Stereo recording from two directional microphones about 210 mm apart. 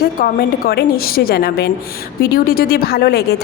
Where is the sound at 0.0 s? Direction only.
45° left (ahead or behind).